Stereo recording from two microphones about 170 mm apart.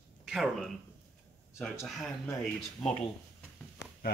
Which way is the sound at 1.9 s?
Centre (ahead or behind).